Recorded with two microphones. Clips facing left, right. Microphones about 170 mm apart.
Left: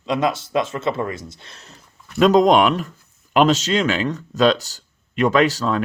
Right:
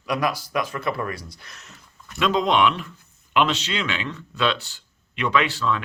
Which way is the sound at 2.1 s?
40° left (ahead or behind).